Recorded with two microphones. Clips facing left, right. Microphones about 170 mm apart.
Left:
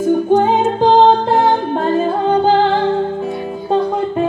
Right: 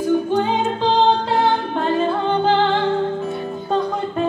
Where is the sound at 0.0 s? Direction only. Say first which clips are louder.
Left 5 dB; 45° left (ahead or behind).